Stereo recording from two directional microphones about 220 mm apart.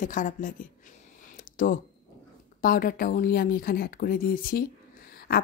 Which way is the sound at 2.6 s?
40° left (ahead or behind).